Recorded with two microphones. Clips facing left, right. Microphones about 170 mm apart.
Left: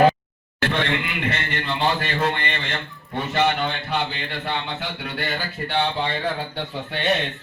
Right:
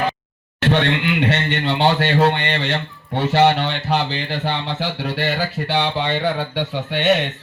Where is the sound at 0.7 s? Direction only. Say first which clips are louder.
Right 8 dB; 85° right.